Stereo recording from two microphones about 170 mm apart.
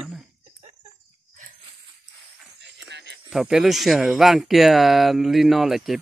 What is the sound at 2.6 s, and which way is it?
Music, 90° right.